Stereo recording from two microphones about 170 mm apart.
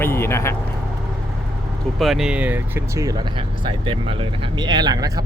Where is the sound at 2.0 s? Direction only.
Centre (ahead or behind); by 3.1 s 15° right (ahead or behind).